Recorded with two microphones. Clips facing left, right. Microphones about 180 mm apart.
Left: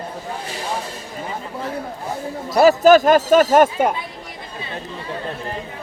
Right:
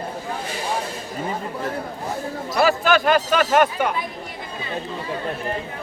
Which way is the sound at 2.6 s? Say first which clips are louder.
Left 7 dB; 40° left (ahead or behind).